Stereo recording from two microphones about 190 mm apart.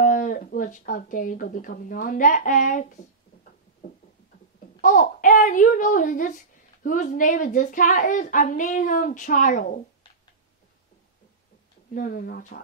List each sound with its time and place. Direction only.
0.0 s speech: 45° left (ahead or behind)
4.8 s a woman's voice: 45° left (ahead or behind)
11.9 s a woman's voice: 45° left (ahead or behind)